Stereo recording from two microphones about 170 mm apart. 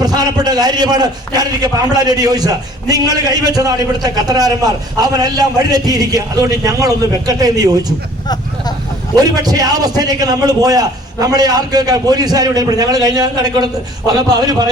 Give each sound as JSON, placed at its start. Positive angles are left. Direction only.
{"t": 0.0, "sound": "a man's voice", "side_deg": -25}
{"t": 9.1, "sound": "a man's voice", "side_deg": -20}